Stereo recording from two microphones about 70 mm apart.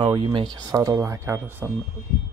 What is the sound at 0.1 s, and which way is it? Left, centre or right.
Speech, right.